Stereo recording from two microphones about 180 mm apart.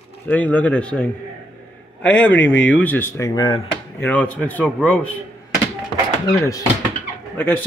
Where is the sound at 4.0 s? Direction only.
10° left (ahead or behind).